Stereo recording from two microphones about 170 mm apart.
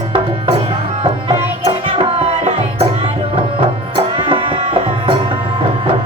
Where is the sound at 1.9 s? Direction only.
40° right (ahead or behind).